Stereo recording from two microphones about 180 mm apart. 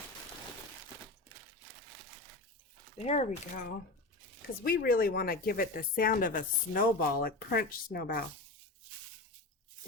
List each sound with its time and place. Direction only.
3.0 s speech: 40° left (ahead or behind)
4.6 s speech: 55° left (ahead or behind)